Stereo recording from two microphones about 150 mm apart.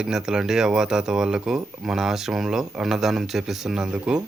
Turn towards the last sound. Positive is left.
turn(degrees=-5)  # may be behind; listen again after turning